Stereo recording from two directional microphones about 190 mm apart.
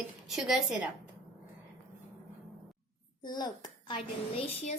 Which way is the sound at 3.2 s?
20° left (ahead or behind).